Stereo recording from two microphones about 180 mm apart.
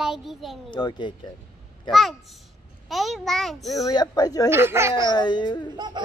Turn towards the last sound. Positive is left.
turn(degrees=-25)  # may be behind; listen again after turning